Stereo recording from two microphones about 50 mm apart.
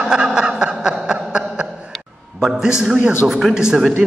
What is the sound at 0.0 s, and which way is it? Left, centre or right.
Snicker, centre.